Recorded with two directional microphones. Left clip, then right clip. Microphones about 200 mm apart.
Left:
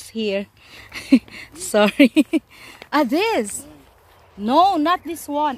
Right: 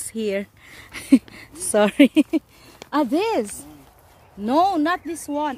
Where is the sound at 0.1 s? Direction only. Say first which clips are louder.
Left 2 dB; 15° right (ahead or behind).